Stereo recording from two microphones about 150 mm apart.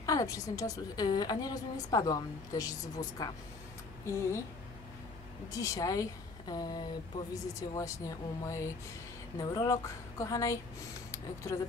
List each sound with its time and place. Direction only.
0.0 s a woman's voice: 20° left (ahead or behind)
5.5 s a woman's voice: 20° left (ahead or behind)